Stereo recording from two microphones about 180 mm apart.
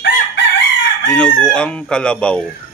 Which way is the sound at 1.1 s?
5° left (ahead or behind).